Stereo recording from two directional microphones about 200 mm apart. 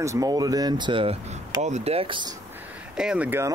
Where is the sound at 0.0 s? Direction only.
15° right (ahead or behind).